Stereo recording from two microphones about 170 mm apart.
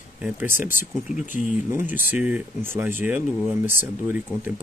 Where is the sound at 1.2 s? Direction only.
50° left (ahead or behind).